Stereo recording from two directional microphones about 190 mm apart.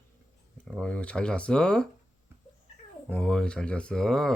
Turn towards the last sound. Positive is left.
turn(degrees=0)  # may be behind; listen again after turning